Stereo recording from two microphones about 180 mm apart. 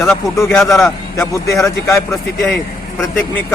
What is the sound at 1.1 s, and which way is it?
Speech, 15° left (ahead or behind).